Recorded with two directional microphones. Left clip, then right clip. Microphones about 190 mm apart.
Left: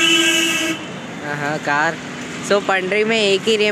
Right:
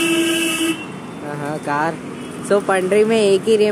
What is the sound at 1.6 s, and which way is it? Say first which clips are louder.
Speech: left 1 dB; 15° right (ahead or behind).